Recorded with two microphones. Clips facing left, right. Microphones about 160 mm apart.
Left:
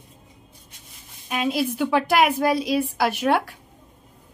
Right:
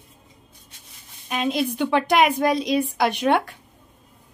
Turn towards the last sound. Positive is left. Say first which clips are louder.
# right 1 dB
turn(degrees=5)  # may be behind; listen again after turning